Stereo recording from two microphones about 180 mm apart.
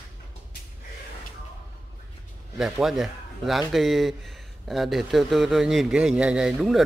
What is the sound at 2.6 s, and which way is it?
A man's voice, centre (ahead or behind).